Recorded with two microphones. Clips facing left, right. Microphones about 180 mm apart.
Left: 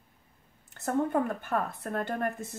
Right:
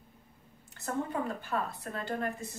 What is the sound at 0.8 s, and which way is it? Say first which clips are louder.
A woman's voice: left 6 dB; 55° left (ahead or behind).